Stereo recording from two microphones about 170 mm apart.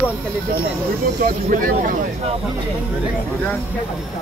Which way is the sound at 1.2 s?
55° right (ahead or behind).